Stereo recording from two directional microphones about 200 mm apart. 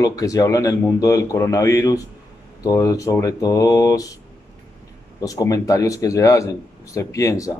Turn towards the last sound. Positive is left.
turn(degrees=15)  # may be behind; listen again after turning